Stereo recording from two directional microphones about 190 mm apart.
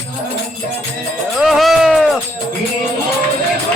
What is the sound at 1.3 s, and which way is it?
Music, centre (ahead or behind).